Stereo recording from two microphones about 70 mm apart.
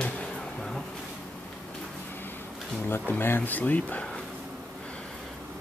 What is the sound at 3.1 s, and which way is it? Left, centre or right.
Speech, left.